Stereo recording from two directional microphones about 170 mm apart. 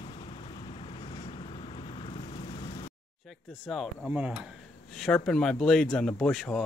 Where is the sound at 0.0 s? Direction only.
30° left (ahead or behind).